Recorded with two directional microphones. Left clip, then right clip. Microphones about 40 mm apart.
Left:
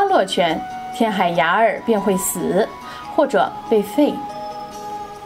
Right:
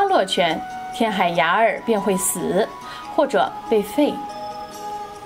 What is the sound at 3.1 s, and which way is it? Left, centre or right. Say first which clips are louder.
A woman's voice: left 2 dB; centre.